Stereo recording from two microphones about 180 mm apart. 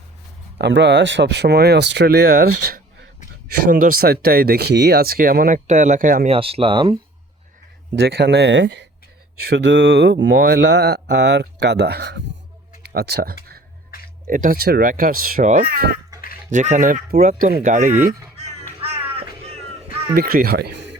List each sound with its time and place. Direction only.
0.6 s speech: 75° right (ahead or behind)
3.7 s speech: 50° right (ahead or behind)
6.2 s speech: 30° right (ahead or behind)
7.9 s speech: 65° right (ahead or behind)
12.9 s speech: 55° right (ahead or behind)
14.3 s speech: 50° right (ahead or behind)
16.5 s speech: 45° right (ahead or behind)
20.1 s speech: 55° right (ahead or behind)